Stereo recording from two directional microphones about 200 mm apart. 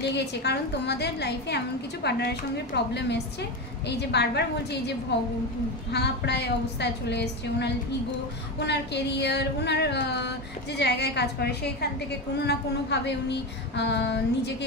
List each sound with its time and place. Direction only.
0.0 s a woman's voice: 55° left (ahead or behind)